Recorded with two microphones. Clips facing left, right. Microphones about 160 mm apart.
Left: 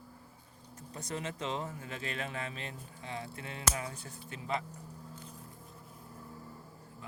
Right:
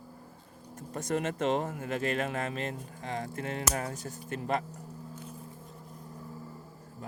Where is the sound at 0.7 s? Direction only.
50° right (ahead or behind).